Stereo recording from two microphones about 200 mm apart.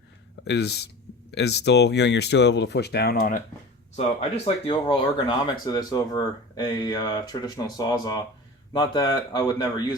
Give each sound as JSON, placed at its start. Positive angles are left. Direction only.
{"t": 0.4, "sound": "speech", "side_deg": 55}
{"t": 3.9, "sound": "speech", "side_deg": 30}